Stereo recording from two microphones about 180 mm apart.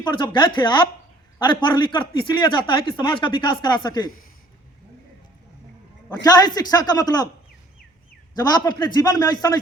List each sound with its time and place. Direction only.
0.0 s speech: 25° left (ahead or behind)
6.2 s speech: 20° left (ahead or behind)
8.4 s speech: 25° left (ahead or behind)